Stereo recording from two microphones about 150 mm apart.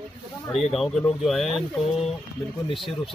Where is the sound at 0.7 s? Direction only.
Centre (ahead or behind).